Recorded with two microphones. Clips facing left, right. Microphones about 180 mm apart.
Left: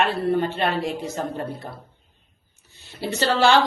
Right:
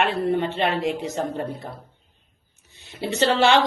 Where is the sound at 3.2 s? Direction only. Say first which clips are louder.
Even; 20° right (ahead or behind).